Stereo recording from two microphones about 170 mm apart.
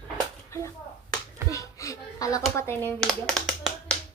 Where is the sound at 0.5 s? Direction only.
15° left (ahead or behind).